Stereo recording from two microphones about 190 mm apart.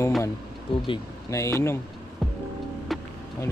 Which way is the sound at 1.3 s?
15° left (ahead or behind).